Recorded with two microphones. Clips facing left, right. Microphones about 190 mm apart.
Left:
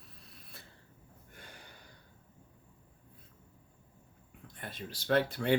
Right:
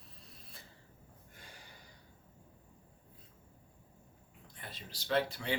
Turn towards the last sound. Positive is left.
turn(degrees=55)  # may be behind; listen again after turning